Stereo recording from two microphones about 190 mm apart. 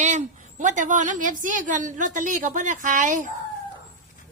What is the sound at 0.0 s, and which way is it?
A woman's voice, 40° right (ahead or behind).